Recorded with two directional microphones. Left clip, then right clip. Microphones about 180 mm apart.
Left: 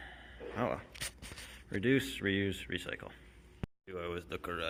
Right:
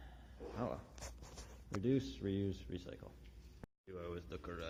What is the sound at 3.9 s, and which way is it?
Speech, 25° left (ahead or behind).